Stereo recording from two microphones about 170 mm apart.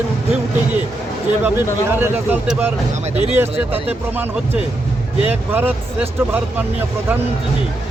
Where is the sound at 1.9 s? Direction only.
15° right (ahead or behind).